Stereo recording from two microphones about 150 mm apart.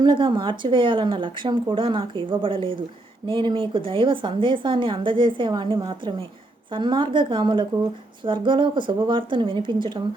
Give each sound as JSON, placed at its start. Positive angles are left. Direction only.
{"t": 0.0, "sound": "speech", "side_deg": -30}